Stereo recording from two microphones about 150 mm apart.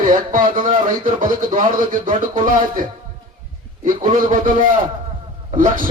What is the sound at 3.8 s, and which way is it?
Speech, 60° right (ahead or behind).